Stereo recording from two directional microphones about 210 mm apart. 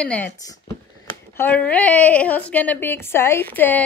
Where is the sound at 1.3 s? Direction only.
10° left (ahead or behind).